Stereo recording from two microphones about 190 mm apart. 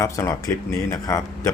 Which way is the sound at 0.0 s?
15° left (ahead or behind).